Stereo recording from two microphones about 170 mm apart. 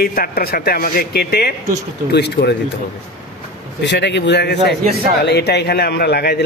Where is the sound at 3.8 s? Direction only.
90° left; by 6.4 s 70° left (ahead or behind).